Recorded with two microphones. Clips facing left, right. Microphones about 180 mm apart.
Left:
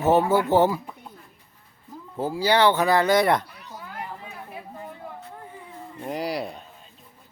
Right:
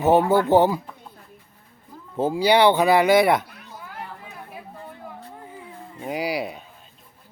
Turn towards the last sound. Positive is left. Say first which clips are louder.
# right 2 dB
turn(degrees=-5)  # may be behind; listen again after turning